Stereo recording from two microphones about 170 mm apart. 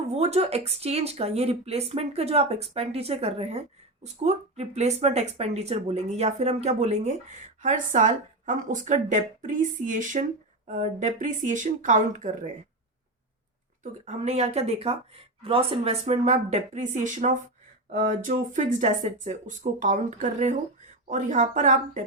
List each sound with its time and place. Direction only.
0.1 s speech: 40° right (ahead or behind)
14.0 s speech: 40° right (ahead or behind)